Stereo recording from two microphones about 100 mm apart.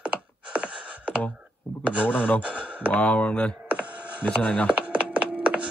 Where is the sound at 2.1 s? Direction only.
15° left (ahead or behind).